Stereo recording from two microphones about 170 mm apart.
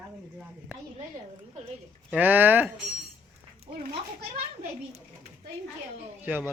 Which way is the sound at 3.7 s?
30° right (ahead or behind).